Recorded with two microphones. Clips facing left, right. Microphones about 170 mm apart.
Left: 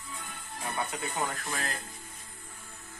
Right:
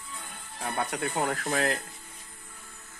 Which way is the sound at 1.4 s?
65° right (ahead or behind).